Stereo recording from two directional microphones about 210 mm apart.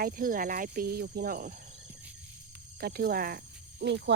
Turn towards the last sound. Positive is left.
turn(degrees=-55)  # may be behind; listen again after turning